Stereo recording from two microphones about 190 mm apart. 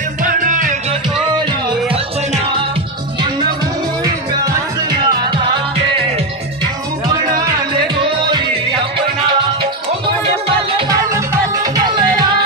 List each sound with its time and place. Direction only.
0.2 s music: 45° right (ahead or behind)
1.4 s music: 25° right (ahead or behind)
4.0 s music: 20° right (ahead or behind)
10.8 s music: 20° right (ahead or behind)